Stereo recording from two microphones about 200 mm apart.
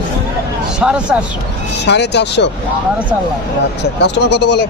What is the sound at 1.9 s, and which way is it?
Speech, 60° left (ahead or behind).